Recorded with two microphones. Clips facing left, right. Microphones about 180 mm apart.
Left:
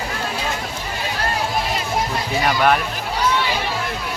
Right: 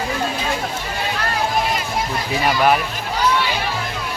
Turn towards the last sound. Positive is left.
turn(degrees=-5)  # may be behind; listen again after turning